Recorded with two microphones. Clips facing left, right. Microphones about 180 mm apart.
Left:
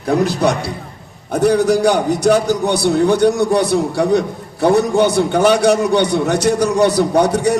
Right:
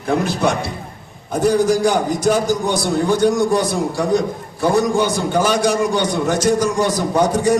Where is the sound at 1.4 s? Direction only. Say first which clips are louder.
Left 2 dB; 65° left (ahead or behind).